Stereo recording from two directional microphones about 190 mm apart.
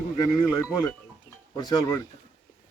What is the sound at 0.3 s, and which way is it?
Speech, 15° left (ahead or behind).